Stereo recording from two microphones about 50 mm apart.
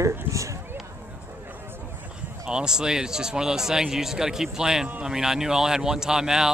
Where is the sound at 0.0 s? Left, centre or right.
Right.